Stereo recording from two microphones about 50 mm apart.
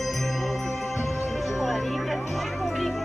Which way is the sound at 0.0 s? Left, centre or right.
Centre.